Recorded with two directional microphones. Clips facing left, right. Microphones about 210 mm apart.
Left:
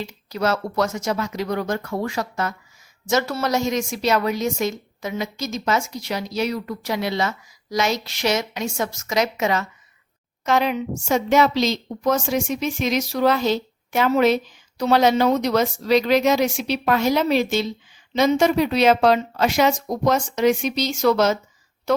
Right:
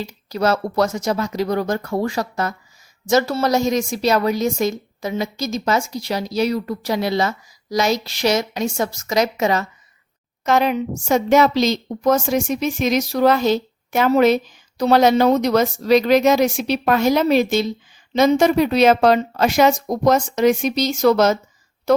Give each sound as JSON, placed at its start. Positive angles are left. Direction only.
{"t": 0.0, "sound": "a woman's voice", "side_deg": -35}